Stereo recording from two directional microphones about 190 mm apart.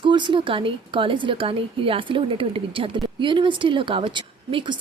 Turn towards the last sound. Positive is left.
turn(degrees=-25)  # may be behind; listen again after turning